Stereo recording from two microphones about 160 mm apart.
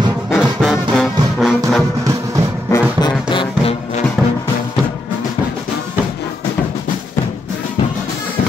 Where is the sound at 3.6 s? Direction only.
40° left (ahead or behind).